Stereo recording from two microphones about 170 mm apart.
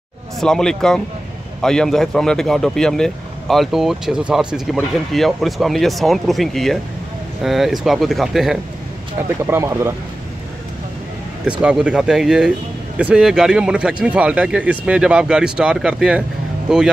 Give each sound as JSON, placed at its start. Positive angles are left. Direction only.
{"t": 0.4, "sound": "speech", "side_deg": 5}
{"t": 9.5, "sound": "speech", "side_deg": -15}
{"t": 11.6, "sound": "speech", "side_deg": -5}